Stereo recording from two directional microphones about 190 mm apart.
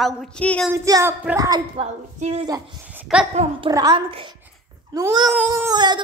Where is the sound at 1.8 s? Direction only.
35° right (ahead or behind).